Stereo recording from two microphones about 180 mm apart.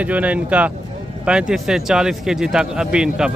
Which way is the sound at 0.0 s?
10° right (ahead or behind).